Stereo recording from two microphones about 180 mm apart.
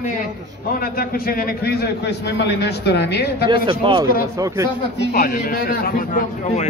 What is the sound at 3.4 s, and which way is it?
Speech, 25° right (ahead or behind).